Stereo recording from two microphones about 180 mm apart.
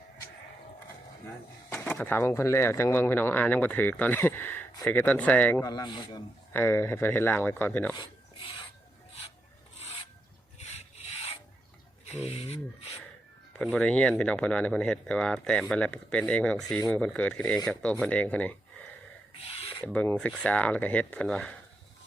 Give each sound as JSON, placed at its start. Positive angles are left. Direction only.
{"t": 1.7, "sound": "speech", "side_deg": 10}
{"t": 5.6, "sound": "a man's voice", "side_deg": 20}
{"t": 6.5, "sound": "speech", "side_deg": 10}
{"t": 12.1, "sound": "speech", "side_deg": 35}
{"t": 13.7, "sound": "speech", "side_deg": 5}
{"t": 19.4, "sound": "filing", "side_deg": 35}
{"t": 19.8, "sound": "speech", "side_deg": 10}